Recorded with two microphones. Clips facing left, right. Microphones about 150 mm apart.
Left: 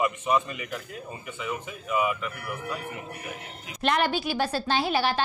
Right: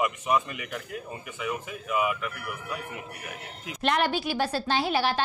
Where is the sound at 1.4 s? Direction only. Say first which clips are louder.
Right 1 dB; 5° right (ahead or behind).